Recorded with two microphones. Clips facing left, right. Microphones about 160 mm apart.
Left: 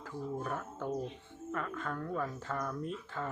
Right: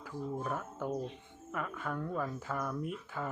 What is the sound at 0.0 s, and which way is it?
Speech, 5° right (ahead or behind).